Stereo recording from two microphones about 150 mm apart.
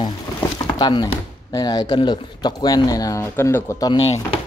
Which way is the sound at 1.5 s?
25° left (ahead or behind).